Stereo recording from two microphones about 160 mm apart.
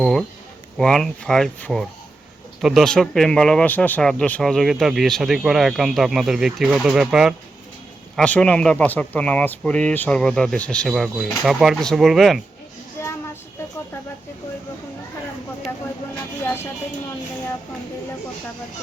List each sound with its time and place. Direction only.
0.0 s a man's voice: centre (ahead or behind)
13.0 s child singing: 15° left (ahead or behind)
16.4 s music: 15° left (ahead or behind)